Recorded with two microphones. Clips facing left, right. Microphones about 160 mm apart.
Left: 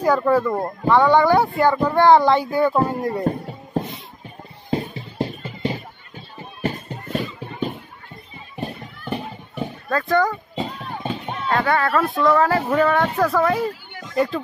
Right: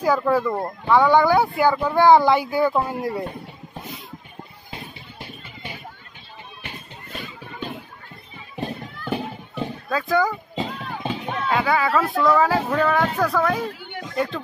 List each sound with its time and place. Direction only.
0.0 s speech: centre (ahead or behind)
3.3 s a sound: 40° left (ahead or behind)
4.6 s music: 35° left (ahead or behind)
8.5 s children playing: centre (ahead or behind)
11.0 s music: 5° right (ahead or behind)
11.4 s speech: 5° right (ahead or behind)